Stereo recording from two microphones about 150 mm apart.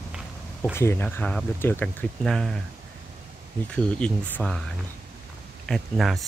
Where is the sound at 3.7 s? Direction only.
5° left (ahead or behind).